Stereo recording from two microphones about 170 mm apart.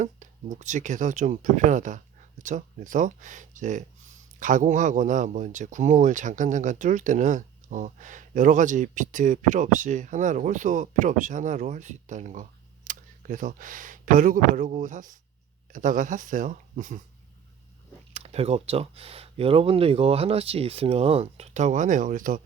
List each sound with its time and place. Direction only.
0.0 s speech: 50° right (ahead or behind)
18.1 s speech: 40° right (ahead or behind)